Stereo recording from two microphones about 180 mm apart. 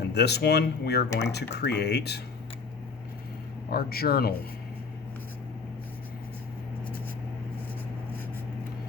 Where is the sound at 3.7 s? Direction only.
60° left (ahead or behind).